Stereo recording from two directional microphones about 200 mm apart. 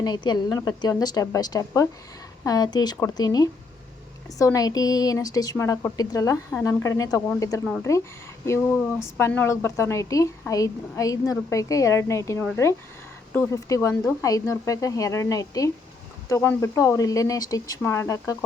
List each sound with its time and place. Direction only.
0.0 s a woman's voice: 20° left (ahead or behind)
7.6 s speech: 5° left (ahead or behind)
8.4 s a woman's voice: 15° left (ahead or behind)